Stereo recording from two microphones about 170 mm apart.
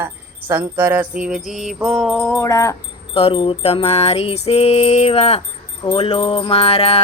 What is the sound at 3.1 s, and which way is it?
Music, 35° left (ahead or behind).